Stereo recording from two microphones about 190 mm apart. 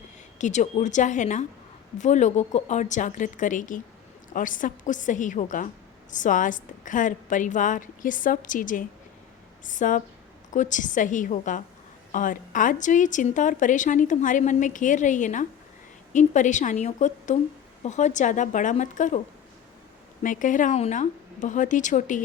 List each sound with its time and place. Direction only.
0.3 s a woman's voice: 40° left (ahead or behind)
20.2 s speech: 45° left (ahead or behind)